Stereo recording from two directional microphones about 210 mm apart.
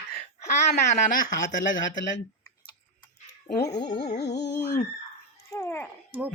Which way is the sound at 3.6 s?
20° left (ahead or behind).